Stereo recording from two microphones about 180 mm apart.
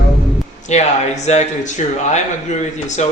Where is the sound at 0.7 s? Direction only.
40° left (ahead or behind).